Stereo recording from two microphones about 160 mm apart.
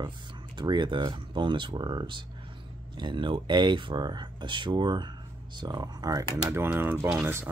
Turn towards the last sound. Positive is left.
turn(degrees=-10)  # may be behind; listen again after turning